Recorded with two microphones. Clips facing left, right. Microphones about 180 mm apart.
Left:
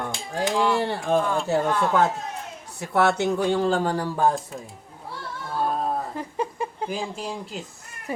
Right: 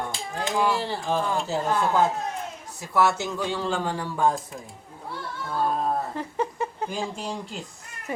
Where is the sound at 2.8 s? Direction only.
60° left (ahead or behind); by 4.6 s 35° left (ahead or behind).